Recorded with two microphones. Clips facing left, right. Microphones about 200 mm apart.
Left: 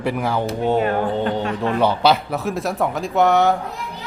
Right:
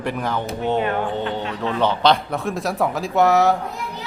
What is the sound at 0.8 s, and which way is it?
Speech, 40° left (ahead or behind).